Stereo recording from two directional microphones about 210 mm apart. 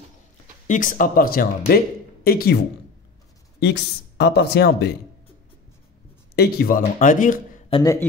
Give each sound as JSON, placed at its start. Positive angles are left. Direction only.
{"t": 0.7, "sound": "speech", "side_deg": 40}
{"t": 6.3, "sound": "speech", "side_deg": 50}
{"t": 7.7, "sound": "a man's voice", "side_deg": 15}